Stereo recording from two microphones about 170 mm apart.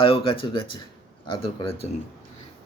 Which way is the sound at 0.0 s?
30° left (ahead or behind).